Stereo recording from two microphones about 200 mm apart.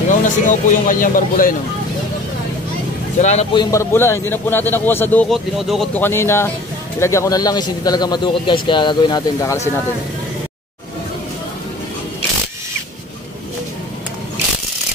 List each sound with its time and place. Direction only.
0.1 s speech: 40° left (ahead or behind)
3.2 s speech: 35° left (ahead or behind)
3.5 s a man's voice: 15° left (ahead or behind)